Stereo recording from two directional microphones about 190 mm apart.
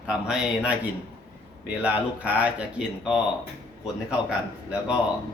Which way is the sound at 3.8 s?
5° right (ahead or behind).